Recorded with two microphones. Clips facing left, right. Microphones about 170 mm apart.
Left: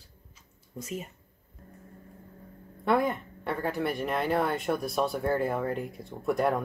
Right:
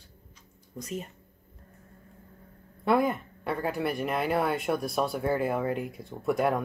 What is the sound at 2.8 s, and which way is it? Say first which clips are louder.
Speech: right 1 dB; centre (ahead or behind).